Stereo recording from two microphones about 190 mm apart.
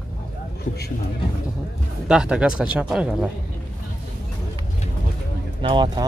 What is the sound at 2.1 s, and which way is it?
Speech, 5° right (ahead or behind).